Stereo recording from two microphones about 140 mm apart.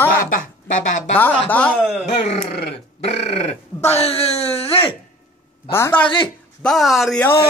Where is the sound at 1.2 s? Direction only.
10° left (ahead or behind).